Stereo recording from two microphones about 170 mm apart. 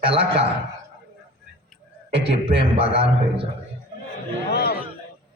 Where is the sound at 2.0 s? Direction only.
80° right.